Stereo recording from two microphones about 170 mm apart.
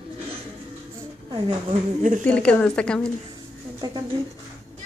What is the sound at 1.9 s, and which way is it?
Speech, 50° right (ahead or behind).